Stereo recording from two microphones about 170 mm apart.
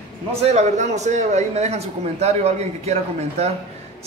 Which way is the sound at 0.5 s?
40° right (ahead or behind).